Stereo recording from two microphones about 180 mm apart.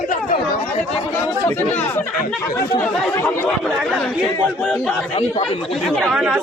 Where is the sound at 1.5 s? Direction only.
10° left (ahead or behind).